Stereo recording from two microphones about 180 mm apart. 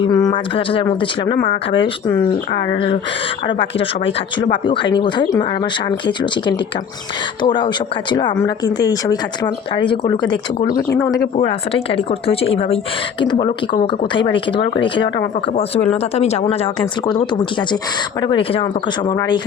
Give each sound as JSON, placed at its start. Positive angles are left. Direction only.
{"t": 0.0, "sound": "speech", "side_deg": 25}
{"t": 3.8, "sound": "a woman's voice", "side_deg": 30}
{"t": 10.8, "sound": "speech", "side_deg": 15}
{"t": 11.4, "sound": "a woman's voice", "side_deg": 35}
{"t": 15.5, "sound": "a woman's voice", "side_deg": 35}
{"t": 17.1, "sound": "speech", "side_deg": 25}